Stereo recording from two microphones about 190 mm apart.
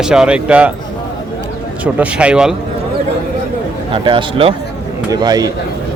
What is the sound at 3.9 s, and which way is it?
A man's voice, 25° right (ahead or behind).